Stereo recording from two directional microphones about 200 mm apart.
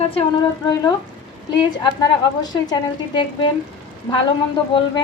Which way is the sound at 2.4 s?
20° left (ahead or behind).